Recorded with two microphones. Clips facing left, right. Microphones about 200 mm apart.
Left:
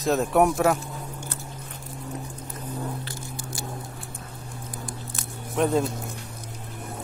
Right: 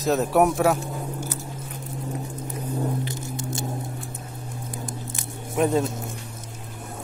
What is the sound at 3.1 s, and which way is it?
Squish, 20° right (ahead or behind).